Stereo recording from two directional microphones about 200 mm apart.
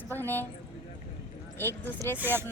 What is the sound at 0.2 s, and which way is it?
Speech, 10° left (ahead or behind).